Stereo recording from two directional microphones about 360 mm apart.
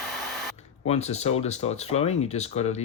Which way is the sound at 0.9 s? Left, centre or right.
Centre.